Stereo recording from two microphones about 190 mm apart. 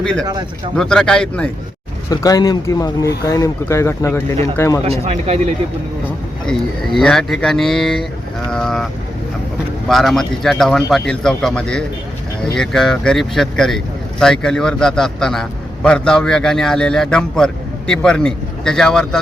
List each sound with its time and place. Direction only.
0.0 s speech: 5° left (ahead or behind)
2.0 s speech: 20° left (ahead or behind)
4.9 s speech: 35° right (ahead or behind)
6.4 s speech: 5° left (ahead or behind)
9.9 s speech: centre (ahead or behind)